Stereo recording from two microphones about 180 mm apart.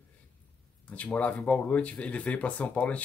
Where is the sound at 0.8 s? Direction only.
5° left (ahead or behind).